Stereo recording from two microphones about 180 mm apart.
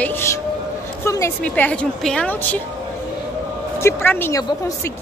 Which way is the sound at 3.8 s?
10° left (ahead or behind).